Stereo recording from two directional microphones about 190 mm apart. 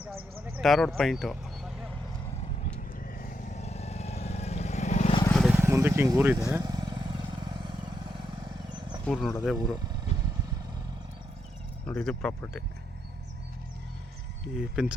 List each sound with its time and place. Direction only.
0.0 s a sound: 5° right (ahead or behind)
2.7 s vehicle: 45° left (ahead or behind)
5.3 s vehicle: centre (ahead or behind)
5.5 s vehicle: 15° right (ahead or behind)
9.0 s speech: 5° left (ahead or behind)
10.1 s vehicle: 35° left (ahead or behind)
11.9 s speech: 5° left (ahead or behind)
14.5 s speech: 5° right (ahead or behind)